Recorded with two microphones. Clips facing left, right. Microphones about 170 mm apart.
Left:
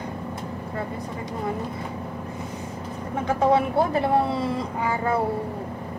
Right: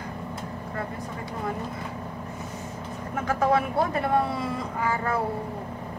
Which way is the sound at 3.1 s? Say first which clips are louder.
Left 3 dB; 30° left (ahead or behind).